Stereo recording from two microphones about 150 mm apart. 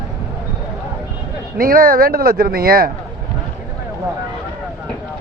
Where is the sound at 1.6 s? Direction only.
75° right (ahead or behind).